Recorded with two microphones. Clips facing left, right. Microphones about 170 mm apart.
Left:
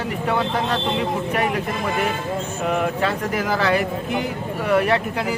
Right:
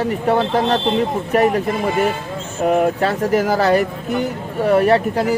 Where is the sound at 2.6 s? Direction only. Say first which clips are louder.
Right 7 dB; 40° right (ahead or behind).